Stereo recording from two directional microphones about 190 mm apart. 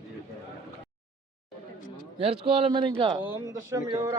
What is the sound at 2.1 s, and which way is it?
Speech, 30° right (ahead or behind).